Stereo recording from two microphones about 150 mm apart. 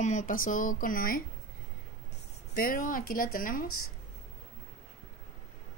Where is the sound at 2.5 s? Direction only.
75° left (ahead or behind).